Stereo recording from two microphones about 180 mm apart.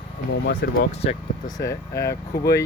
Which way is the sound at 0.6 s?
70° left (ahead or behind).